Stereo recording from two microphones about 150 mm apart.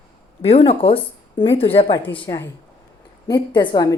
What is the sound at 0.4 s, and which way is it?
Speech, 40° left (ahead or behind).